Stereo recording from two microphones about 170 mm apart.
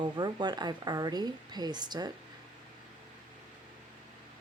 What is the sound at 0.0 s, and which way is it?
A woman's voice, 25° right (ahead or behind).